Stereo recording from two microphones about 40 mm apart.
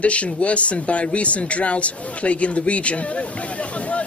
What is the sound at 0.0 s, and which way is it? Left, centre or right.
Speech, left.